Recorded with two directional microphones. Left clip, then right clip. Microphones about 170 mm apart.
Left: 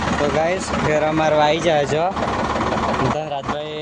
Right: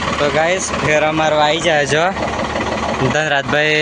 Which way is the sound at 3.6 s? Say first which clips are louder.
Right 13 dB; 20° right (ahead or behind).